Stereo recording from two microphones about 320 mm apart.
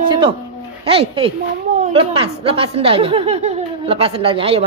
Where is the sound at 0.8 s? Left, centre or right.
Centre.